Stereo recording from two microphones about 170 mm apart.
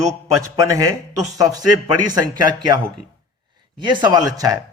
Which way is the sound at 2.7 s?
25° right (ahead or behind).